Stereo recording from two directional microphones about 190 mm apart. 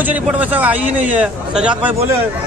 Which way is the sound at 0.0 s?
10° right (ahead or behind).